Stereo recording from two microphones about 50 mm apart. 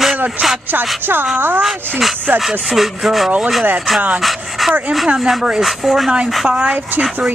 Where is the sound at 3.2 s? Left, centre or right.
Centre.